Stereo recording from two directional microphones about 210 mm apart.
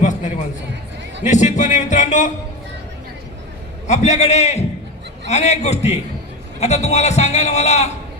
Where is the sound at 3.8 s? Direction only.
35° left (ahead or behind).